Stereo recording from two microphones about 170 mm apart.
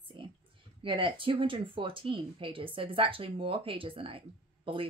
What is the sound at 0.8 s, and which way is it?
Speech, 30° right (ahead or behind).